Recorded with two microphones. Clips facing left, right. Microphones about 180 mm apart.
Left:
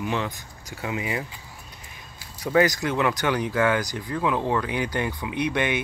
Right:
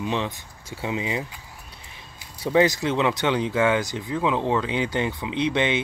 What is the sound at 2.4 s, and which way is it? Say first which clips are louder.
Speech: right 1 dB; 25° right (ahead or behind).